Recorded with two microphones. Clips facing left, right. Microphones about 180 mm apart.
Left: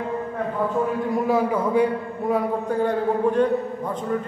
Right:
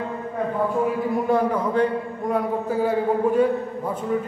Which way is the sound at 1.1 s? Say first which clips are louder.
Left 1 dB; 5° left (ahead or behind).